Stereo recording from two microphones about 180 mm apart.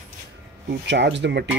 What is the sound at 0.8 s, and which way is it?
Speech, 75° right (ahead or behind).